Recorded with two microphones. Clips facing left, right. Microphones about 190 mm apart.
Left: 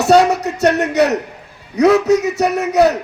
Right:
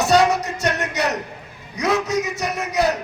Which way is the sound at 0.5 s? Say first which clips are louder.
Left 9 dB; 65° left (ahead or behind).